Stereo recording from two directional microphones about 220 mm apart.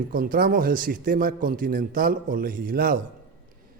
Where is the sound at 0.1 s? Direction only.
40° right (ahead or behind).